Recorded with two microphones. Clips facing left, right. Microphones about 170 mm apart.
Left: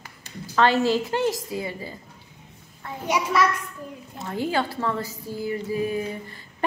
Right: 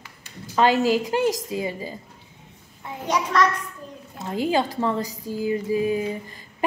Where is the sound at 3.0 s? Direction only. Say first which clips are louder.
Right 1 dB; 10° left (ahead or behind).